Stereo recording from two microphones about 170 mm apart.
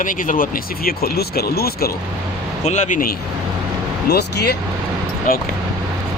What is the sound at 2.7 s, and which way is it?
Speech, 45° left (ahead or behind).